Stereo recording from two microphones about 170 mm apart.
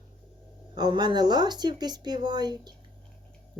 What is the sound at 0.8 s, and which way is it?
Speech, 25° right (ahead or behind).